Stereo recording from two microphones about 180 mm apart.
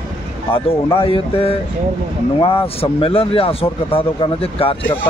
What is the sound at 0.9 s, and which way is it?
Speech, 30° left (ahead or behind).